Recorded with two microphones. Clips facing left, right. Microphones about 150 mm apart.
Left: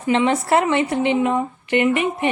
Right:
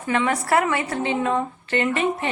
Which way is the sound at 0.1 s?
25° left (ahead or behind).